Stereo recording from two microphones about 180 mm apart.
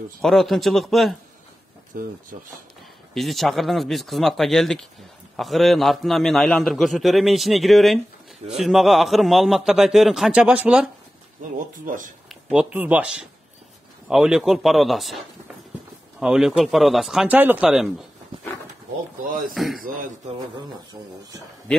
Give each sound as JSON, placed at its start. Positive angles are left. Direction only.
{"t": 0.2, "sound": "a man's voice", "side_deg": 0}
{"t": 1.9, "sound": "speech", "side_deg": -50}
{"t": 3.2, "sound": "a man's voice", "side_deg": 0}
{"t": 11.5, "sound": "speech", "side_deg": -45}
{"t": 12.4, "sound": "a man's voice", "side_deg": -5}
{"t": 16.2, "sound": "a man's voice", "side_deg": -5}
{"t": 19.5, "sound": "a man's voice", "side_deg": 0}
{"t": 19.8, "sound": "speech", "side_deg": -45}